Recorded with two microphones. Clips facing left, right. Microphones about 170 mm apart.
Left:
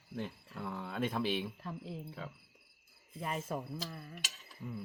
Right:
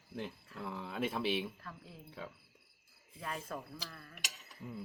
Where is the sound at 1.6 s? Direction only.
25° left (ahead or behind).